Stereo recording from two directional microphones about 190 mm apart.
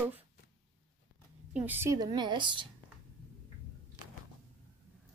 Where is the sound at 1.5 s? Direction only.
10° right (ahead or behind); by 2.6 s 25° right (ahead or behind).